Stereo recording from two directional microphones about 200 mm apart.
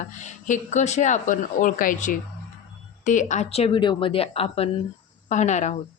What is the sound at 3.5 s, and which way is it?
Speech, 30° left (ahead or behind).